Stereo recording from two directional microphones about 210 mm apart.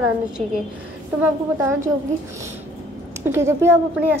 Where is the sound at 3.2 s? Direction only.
10° right (ahead or behind).